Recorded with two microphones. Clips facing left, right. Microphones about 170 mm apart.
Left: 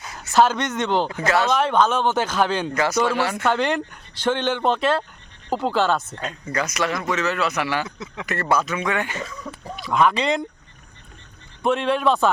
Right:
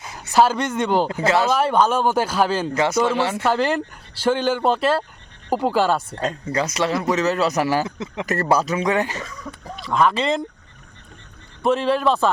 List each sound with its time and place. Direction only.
0.3 s speech: 10° right (ahead or behind)
1.2 s speech: 25° right (ahead or behind)
1.5 s speech: 10° right (ahead or behind)
2.7 s speech: 25° right (ahead or behind)
3.4 s speech: 5° right (ahead or behind)
6.1 s speech: 35° right (ahead or behind)
9.7 s speech: centre (ahead or behind)
11.6 s speech: centre (ahead or behind)